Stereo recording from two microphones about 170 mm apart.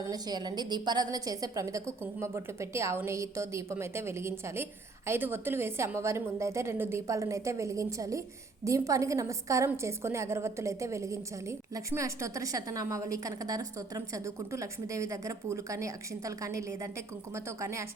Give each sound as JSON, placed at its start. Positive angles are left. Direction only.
{"t": 0.1, "sound": "a woman's voice", "side_deg": -25}